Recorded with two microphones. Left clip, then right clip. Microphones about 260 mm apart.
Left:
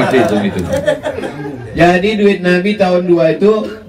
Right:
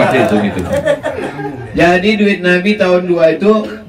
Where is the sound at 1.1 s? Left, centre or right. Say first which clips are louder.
Right 1 dB; right.